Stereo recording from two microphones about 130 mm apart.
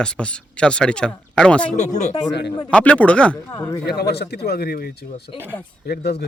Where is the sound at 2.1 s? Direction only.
40° left (ahead or behind).